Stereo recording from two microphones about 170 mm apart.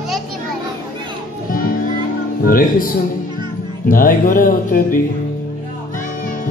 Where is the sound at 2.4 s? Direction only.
55° left (ahead or behind).